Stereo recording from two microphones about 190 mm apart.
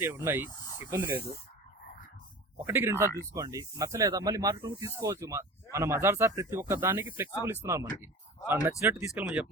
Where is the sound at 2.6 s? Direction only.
10° right (ahead or behind).